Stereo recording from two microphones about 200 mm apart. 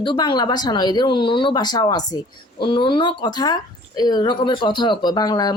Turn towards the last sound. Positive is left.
turn(degrees=20)  # may be behind; listen again after turning